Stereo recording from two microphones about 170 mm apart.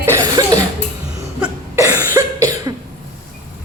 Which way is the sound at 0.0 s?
20° right (ahead or behind).